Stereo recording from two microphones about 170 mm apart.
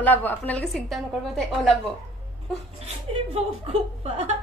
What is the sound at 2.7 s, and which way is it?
A woman's voice, 35° right (ahead or behind).